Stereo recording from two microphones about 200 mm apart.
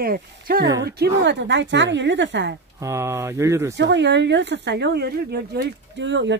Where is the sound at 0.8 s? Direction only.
55° right (ahead or behind).